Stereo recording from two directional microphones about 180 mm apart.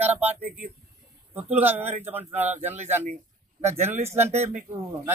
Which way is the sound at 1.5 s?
10° right (ahead or behind).